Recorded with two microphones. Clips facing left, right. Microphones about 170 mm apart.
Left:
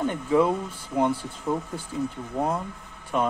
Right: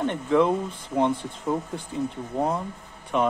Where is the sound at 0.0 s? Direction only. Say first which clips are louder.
Right 1 dB; 5° left (ahead or behind).